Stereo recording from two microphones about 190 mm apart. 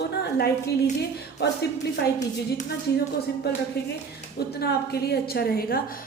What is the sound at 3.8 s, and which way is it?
A woman's voice, 55° left (ahead or behind).